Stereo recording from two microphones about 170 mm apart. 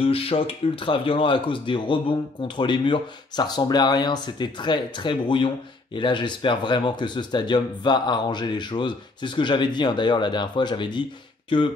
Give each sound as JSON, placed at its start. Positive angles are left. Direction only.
{"t": 0.0, "sound": "speech", "side_deg": 35}